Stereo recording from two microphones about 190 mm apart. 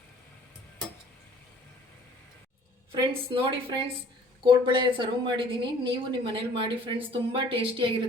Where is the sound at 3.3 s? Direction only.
30° right (ahead or behind).